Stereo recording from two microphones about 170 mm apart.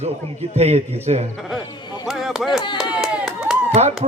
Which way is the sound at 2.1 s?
Centre (ahead or behind).